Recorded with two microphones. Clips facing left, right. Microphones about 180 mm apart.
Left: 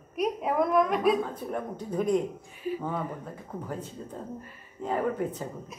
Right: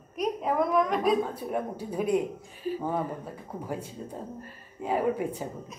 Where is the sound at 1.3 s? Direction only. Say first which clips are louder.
Right 2 dB; 10° right (ahead or behind).